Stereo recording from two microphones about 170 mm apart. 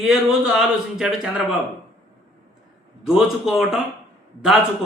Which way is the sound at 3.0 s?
5° right (ahead or behind).